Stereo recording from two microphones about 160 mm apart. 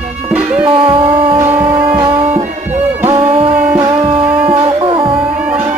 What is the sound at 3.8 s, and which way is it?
Music, 30° right (ahead or behind).